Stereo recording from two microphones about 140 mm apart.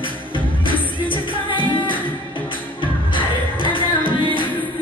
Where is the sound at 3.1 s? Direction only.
35° left (ahead or behind).